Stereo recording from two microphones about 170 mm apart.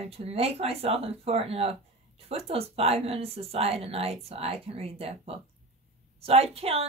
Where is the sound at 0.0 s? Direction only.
35° right (ahead or behind).